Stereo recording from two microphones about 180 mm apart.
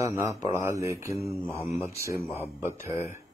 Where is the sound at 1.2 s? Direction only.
Centre (ahead or behind).